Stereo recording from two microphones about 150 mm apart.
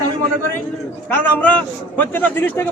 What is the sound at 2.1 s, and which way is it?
Speech, 15° left (ahead or behind).